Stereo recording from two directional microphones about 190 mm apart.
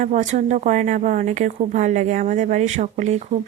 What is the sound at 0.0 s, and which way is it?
Speech, 40° right (ahead or behind).